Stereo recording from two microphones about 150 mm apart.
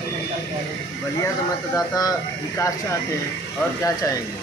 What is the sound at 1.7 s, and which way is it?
Speech, 25° left (ahead or behind).